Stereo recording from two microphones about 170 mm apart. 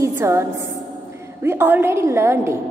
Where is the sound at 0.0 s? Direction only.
15° right (ahead or behind).